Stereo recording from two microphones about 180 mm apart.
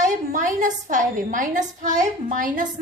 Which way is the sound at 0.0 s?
45° right (ahead or behind).